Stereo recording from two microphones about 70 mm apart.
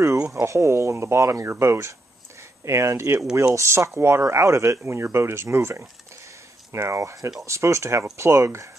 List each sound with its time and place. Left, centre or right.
0.3 s speech: right